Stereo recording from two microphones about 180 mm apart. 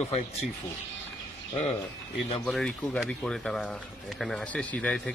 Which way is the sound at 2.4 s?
Centre (ahead or behind).